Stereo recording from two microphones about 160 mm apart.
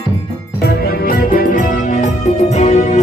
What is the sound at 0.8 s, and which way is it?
Music, 65° left (ahead or behind).